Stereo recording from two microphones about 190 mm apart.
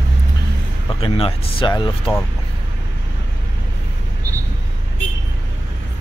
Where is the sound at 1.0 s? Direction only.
30° left (ahead or behind).